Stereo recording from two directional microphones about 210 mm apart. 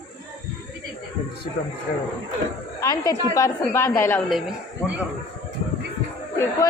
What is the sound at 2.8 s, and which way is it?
A woman's voice, 15° left (ahead or behind).